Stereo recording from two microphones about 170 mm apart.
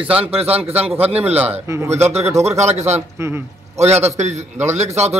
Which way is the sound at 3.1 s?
15° right (ahead or behind).